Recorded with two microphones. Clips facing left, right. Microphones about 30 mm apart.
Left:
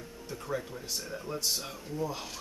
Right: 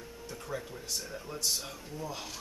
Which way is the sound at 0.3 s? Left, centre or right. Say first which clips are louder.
Left 4 dB; centre.